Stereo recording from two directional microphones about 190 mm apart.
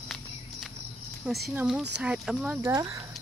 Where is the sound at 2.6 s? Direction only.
15° right (ahead or behind).